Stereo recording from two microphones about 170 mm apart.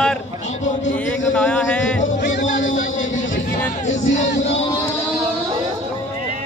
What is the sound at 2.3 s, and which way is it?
Music, 90° left.